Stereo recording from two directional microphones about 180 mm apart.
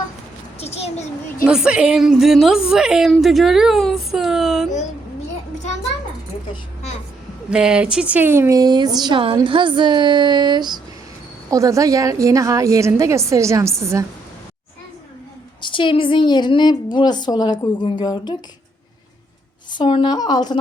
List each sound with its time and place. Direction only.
0.6 s a sound: 35° left (ahead or behind)
1.5 s a woman's voice: 5° right (ahead or behind)
7.5 s a woman's voice: 5° right (ahead or behind)
15.6 s a woman's voice: 25° left (ahead or behind)
19.7 s a woman's voice: 25° left (ahead or behind)